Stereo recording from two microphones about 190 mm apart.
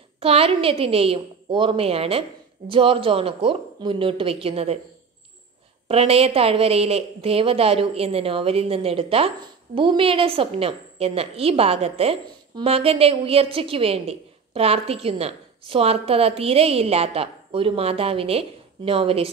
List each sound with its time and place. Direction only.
0.2 s a woman's voice: 30° right (ahead or behind)
5.9 s a woman's voice: 30° right (ahead or behind)